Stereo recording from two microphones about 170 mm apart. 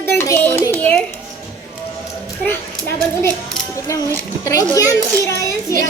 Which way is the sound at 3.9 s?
20° left (ahead or behind).